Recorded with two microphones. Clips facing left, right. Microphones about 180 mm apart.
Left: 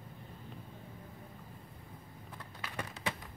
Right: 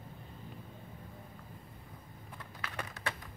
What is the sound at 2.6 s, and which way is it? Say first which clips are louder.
Typing: left 1 dB; 10° left (ahead or behind).